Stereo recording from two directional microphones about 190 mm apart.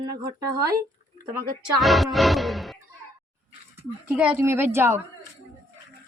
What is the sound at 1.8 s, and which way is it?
Music, centre (ahead or behind).